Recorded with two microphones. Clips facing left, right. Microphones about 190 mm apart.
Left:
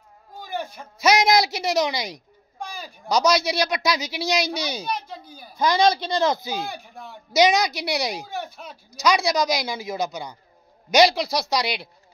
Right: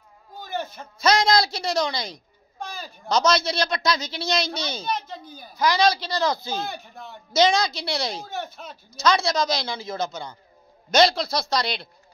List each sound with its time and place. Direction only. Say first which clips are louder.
0.4 s speech: even; 10° left (ahead or behind)
5.6 s a man's voice: left 1 dB; 25° left (ahead or behind)